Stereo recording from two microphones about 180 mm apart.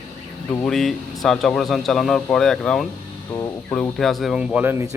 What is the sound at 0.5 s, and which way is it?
Speech, 5° left (ahead or behind).